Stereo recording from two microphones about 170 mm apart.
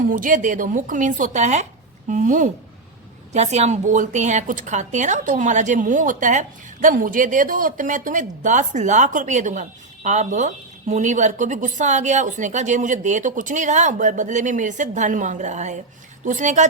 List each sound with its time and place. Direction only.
0.0 s a woman's voice: 55° right (ahead or behind)